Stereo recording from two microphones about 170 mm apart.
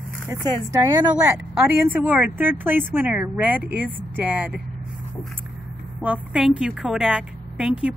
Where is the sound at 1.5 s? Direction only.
10° right (ahead or behind).